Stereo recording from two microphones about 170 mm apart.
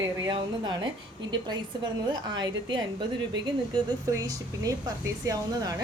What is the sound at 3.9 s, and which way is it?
A woman's voice, 20° right (ahead or behind).